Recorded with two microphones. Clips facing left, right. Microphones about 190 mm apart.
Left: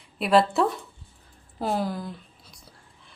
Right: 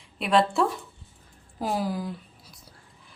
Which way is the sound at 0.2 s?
5° left (ahead or behind).